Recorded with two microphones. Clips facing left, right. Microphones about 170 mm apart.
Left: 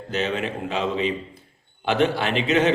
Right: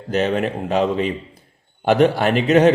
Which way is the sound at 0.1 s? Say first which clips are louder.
Right 6 dB; 45° right (ahead or behind).